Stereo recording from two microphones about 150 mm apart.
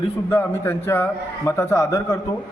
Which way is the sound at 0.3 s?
15° left (ahead or behind).